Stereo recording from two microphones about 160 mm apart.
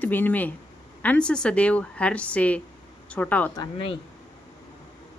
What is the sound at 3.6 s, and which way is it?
Speech, 35° left (ahead or behind).